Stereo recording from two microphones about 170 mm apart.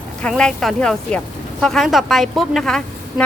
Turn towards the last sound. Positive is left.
turn(degrees=5)  # may be behind; listen again after turning